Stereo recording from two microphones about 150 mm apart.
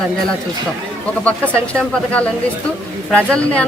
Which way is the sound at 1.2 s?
10° left (ahead or behind).